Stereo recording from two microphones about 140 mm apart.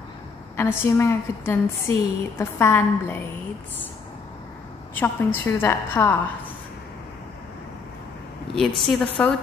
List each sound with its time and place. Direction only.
0.6 s a woman's voice: 15° left (ahead or behind)
4.9 s a woman's voice: 15° left (ahead or behind)
8.5 s a woman's voice: 5° left (ahead or behind)